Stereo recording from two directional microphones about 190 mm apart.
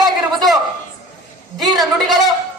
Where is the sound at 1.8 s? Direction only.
Centre (ahead or behind).